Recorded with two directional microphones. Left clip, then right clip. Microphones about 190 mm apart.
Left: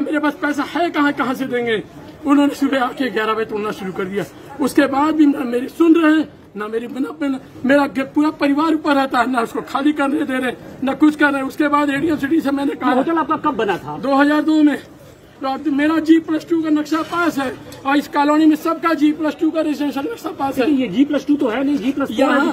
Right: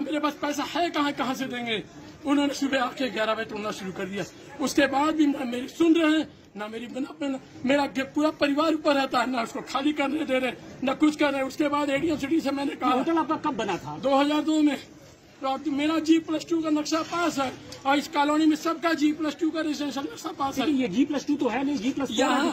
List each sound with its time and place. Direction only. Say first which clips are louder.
0.1 s speech: left 7 dB; centre (ahead or behind)
13.1 s speech: left 8 dB; 55° right (ahead or behind)
14.0 s speech: left 8 dB; centre (ahead or behind)
20.9 s speech: left 9 dB; 55° right (ahead or behind)
22.1 s speech: left 8 dB; centre (ahead or behind)